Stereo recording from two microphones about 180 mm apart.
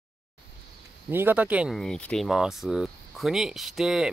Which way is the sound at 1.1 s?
10° right (ahead or behind).